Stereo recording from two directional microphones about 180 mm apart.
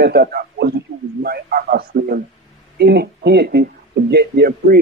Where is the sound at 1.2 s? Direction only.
60° right (ahead or behind).